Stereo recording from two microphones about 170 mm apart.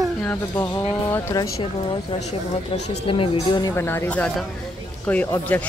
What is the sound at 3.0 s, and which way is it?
Speech, 30° left (ahead or behind).